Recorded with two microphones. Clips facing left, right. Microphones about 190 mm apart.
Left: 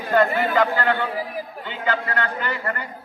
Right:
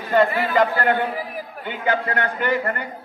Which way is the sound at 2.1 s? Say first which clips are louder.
Right 3 dB; 20° right (ahead or behind).